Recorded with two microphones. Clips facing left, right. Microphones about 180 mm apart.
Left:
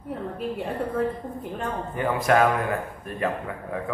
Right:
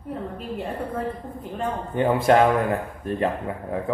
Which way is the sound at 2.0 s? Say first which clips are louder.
Right 3 dB; 30° right (ahead or behind).